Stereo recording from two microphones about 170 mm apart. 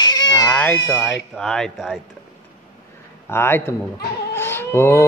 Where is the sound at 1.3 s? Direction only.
Centre (ahead or behind).